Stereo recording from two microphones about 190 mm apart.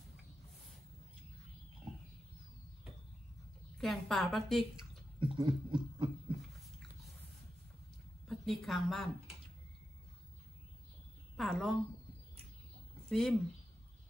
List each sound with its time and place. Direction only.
3.7 s a woman's voice: centre (ahead or behind)
5.2 s a sound: 25° right (ahead or behind)
8.3 s speech: centre (ahead or behind)
11.3 s a woman's voice: centre (ahead or behind)
13.1 s a woman's voice: centre (ahead or behind)